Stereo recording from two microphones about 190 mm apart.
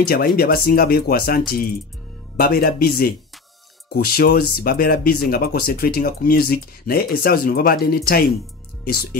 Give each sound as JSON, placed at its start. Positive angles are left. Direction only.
{"t": 0.0, "sound": "speech", "side_deg": 50}